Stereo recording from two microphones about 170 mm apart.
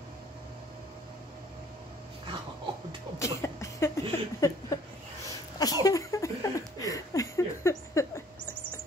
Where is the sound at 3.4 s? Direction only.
15° left (ahead or behind).